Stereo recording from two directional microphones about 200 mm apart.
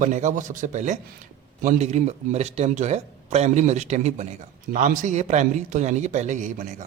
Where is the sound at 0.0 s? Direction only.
40° right (ahead or behind).